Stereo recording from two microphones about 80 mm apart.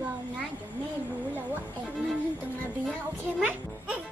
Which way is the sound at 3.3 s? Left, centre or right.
Centre.